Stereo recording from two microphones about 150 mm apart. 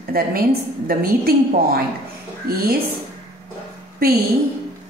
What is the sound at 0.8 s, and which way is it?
A woman's voice, 90° right.